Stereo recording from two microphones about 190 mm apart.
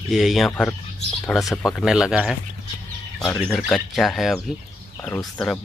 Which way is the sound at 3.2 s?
15° left (ahead or behind).